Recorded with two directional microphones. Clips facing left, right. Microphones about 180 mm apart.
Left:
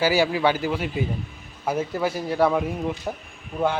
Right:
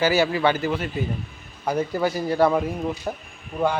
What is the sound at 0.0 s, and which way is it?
A man's voice, 10° left (ahead or behind).